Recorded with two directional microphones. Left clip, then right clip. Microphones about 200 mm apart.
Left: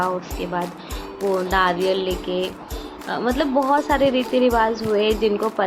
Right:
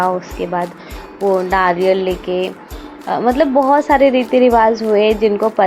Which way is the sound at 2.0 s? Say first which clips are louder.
Right 6 dB; 60° right (ahead or behind).